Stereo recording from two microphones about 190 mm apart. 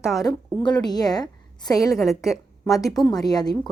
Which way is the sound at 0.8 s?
20° left (ahead or behind).